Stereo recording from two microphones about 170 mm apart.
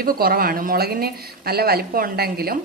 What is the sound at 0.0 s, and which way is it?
Speech, 60° right (ahead or behind).